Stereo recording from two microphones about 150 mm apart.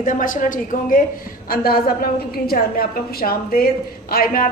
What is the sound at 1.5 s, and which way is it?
A woman's voice, 80° left.